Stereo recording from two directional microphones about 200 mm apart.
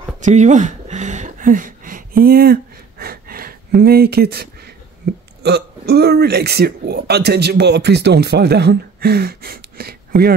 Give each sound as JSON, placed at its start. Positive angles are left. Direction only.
{"t": 0.2, "sound": "speech", "side_deg": -35}